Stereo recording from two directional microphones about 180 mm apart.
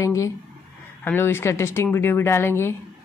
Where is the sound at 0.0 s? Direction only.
15° left (ahead or behind).